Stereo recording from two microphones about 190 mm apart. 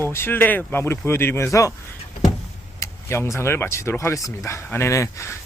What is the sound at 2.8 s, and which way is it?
Speech, 15° left (ahead or behind).